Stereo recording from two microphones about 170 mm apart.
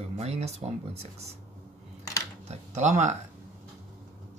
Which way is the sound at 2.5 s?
40° right (ahead or behind).